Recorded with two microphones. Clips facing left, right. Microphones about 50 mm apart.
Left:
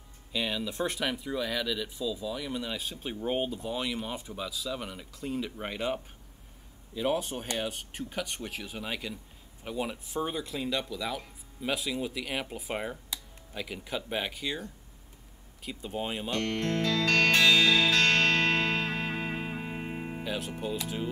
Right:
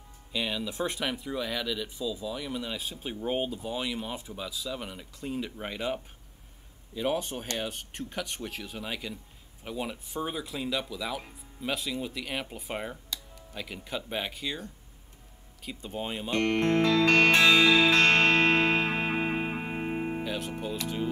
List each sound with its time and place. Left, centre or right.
0.3 s speech: centre
15.6 s speech: centre
16.3 s music: right
20.2 s speech: centre